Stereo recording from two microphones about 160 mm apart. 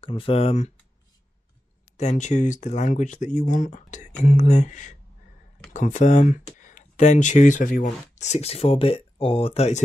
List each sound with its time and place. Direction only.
0.0 s speech: 35° left (ahead or behind)
2.0 s speech: 45° left (ahead or behind)